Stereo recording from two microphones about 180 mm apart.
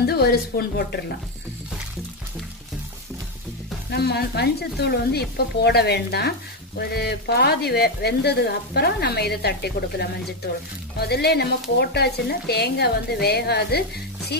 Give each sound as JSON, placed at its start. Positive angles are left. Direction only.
{"t": 0.0, "sound": "speech", "side_deg": 60}
{"t": 3.9, "sound": "speech", "side_deg": 65}